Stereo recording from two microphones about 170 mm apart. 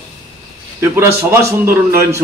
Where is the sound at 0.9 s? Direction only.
15° right (ahead or behind).